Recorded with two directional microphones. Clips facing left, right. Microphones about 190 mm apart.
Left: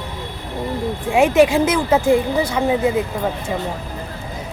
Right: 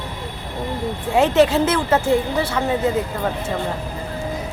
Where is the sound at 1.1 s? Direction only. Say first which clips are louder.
Left 2 dB; 10° left (ahead or behind).